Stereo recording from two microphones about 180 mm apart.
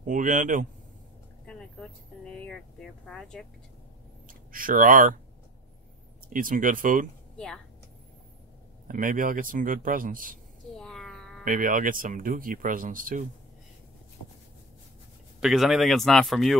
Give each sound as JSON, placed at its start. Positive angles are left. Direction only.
{"t": 0.0, "sound": "speech", "side_deg": -45}
{"t": 1.4, "sound": "vehicle", "side_deg": 5}
{"t": 2.3, "sound": "speech", "side_deg": 5}
{"t": 4.3, "sound": "speech", "side_deg": -50}
{"t": 6.3, "sound": "speech", "side_deg": -50}
{"t": 7.3, "sound": "speech", "side_deg": 5}
{"t": 8.8, "sound": "speech", "side_deg": -50}
{"t": 10.8, "sound": "a sound", "side_deg": 0}
{"t": 11.4, "sound": "speech", "side_deg": -50}
{"t": 15.4, "sound": "speech", "side_deg": 0}